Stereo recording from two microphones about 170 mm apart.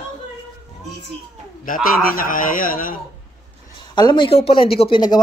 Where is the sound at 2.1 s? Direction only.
55° left (ahead or behind).